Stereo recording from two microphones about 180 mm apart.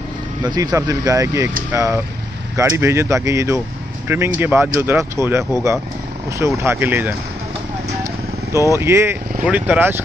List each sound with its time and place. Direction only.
0.4 s speech: 25° right (ahead or behind)
8.7 s speech: 15° right (ahead or behind)